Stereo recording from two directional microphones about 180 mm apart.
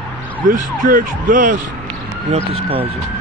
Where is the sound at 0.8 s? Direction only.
50° right (ahead or behind).